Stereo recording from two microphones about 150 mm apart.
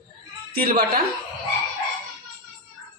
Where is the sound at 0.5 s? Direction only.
80° right.